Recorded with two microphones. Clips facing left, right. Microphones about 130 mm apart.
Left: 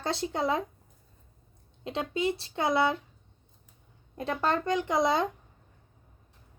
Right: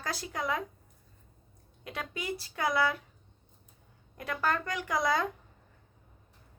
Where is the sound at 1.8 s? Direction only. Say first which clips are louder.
Left 8 dB; 25° left (ahead or behind).